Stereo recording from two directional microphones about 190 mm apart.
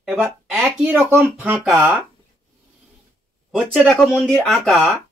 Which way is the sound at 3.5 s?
Centre (ahead or behind).